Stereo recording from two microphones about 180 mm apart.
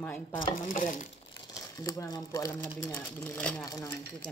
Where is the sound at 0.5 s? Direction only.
50° left (ahead or behind).